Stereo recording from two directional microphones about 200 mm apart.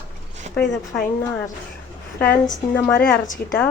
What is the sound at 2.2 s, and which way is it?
Speech, 10° left (ahead or behind).